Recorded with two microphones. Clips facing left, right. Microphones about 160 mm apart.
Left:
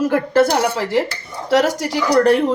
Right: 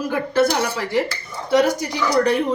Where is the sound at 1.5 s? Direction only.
90° left.